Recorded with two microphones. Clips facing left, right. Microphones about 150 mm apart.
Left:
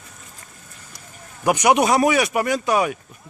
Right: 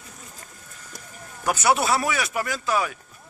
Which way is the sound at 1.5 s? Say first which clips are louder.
Left 5 dB; 15° left (ahead or behind).